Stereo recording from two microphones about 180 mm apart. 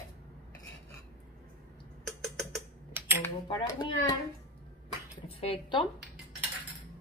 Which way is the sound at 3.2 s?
20° left (ahead or behind).